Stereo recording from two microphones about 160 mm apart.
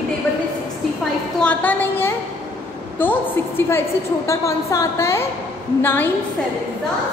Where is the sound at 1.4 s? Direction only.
10° left (ahead or behind).